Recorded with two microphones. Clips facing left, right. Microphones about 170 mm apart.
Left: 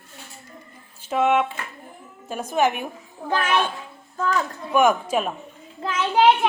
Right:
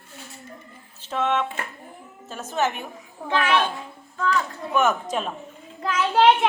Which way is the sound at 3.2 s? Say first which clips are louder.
Right 1 dB; 45° left (ahead or behind).